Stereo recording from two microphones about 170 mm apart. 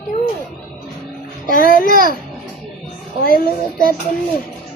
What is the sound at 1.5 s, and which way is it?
Speech, 55° left (ahead or behind).